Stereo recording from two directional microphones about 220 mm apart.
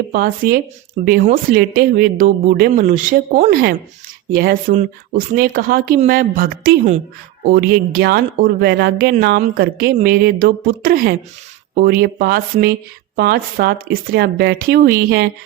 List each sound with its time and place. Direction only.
0.1 s speech: 40° right (ahead or behind)